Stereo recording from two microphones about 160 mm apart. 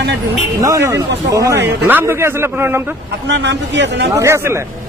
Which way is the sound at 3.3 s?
90° right.